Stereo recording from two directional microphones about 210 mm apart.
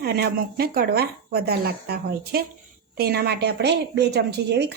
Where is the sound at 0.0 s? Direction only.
50° right (ahead or behind).